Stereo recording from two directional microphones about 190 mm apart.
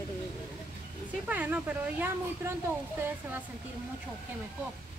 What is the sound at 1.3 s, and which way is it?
Speech, 10° right (ahead or behind).